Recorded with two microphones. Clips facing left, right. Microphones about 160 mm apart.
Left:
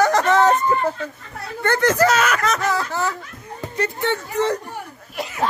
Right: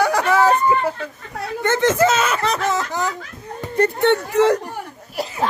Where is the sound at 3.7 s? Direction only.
60° right (ahead or behind); by 4.6 s 80° right.